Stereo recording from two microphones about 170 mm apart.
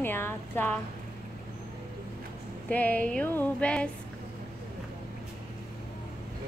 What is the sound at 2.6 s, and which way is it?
Speech, 10° left (ahead or behind).